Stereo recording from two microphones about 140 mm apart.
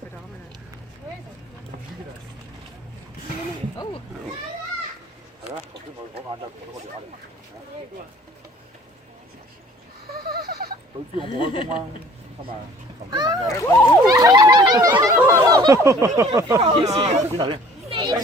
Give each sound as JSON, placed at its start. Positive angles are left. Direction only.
{"t": 10.2, "sound": "a sound", "side_deg": -90}
{"t": 11.3, "sound": "speech", "side_deg": 40}
{"t": 13.1, "sound": "speech", "side_deg": -30}
{"t": 13.5, "sound": "speech", "side_deg": 20}
{"t": 14.1, "sound": "speech", "side_deg": -25}
{"t": 16.9, "sound": "speech", "side_deg": -45}